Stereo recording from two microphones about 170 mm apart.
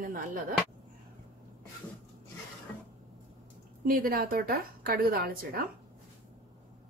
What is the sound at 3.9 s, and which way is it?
A woman's voice, 60° right (ahead or behind).